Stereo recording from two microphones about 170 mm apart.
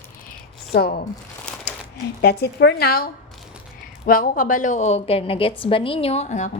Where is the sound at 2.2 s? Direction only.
80° left; by 6.5 s 45° left (ahead or behind).